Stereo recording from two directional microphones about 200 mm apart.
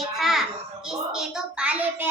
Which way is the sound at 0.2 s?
Centre (ahead or behind).